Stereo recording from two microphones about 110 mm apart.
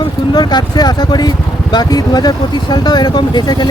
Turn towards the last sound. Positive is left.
turn(degrees=40)  # may be behind; listen again after turning